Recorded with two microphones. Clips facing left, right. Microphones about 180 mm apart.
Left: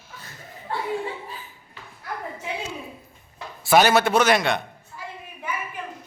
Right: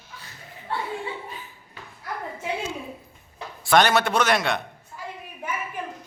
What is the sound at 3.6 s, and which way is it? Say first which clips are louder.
Speech: left 2 dB; 5° left (ahead or behind).